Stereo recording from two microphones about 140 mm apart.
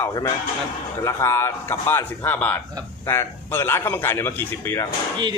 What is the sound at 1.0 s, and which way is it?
A man's voice, 20° left (ahead or behind).